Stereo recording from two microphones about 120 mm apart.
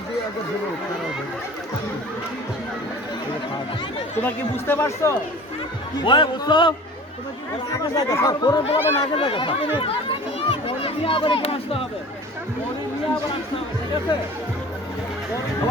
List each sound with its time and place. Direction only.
4.2 s speech: 20° left (ahead or behind)
6.0 s speech: 40° left (ahead or behind)
7.9 s speech: 30° left (ahead or behind)
9.0 s speech: 50° left (ahead or behind)